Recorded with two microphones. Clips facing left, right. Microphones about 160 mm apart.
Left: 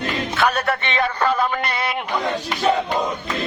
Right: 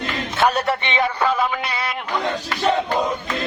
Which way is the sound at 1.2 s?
5° right (ahead or behind).